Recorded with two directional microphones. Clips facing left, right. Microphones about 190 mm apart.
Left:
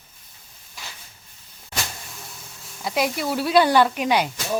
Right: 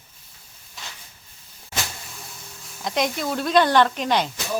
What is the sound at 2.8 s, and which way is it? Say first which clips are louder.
Speech: left 1 dB; 5° left (ahead or behind).